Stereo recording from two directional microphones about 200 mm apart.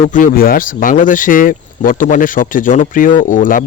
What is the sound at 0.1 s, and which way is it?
Speech, 45° left (ahead or behind).